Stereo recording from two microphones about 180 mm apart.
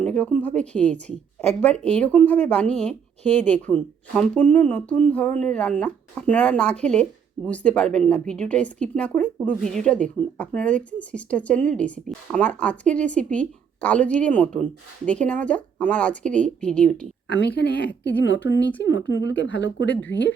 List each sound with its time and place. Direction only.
0.0 s a woman's voice: 5° left (ahead or behind)
17.3 s speech: 70° left (ahead or behind)
18.4 s speech: 90° left